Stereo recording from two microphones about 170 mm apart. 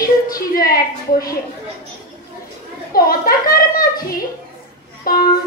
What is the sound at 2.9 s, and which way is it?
Children playing, 60° left (ahead or behind).